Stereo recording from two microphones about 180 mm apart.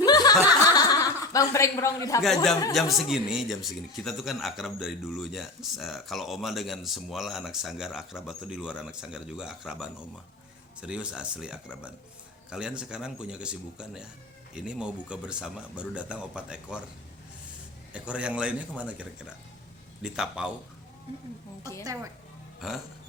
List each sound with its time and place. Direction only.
0.0 s chuckle: 20° left (ahead or behind)
2.2 s speech: centre (ahead or behind)
17.9 s a man's voice: 5° right (ahead or behind)